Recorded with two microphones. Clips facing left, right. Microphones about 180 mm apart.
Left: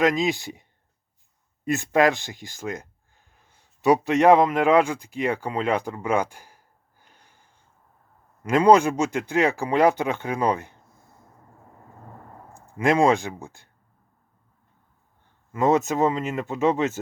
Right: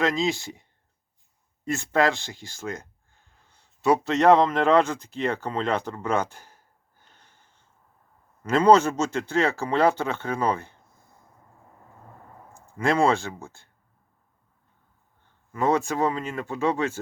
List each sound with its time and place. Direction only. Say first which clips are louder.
0.0 s a man's voice: left 3 dB; 15° left (ahead or behind)
1.6 s a man's voice: left 3 dB; 15° left (ahead or behind)
7.0 s snort: left 1 dB; 10° left (ahead or behind)
8.4 s a man's voice: left 1 dB; 15° left (ahead or behind)
12.7 s a man's voice: left 2 dB; 15° left (ahead or behind)
15.5 s speech: left 3 dB; 20° left (ahead or behind)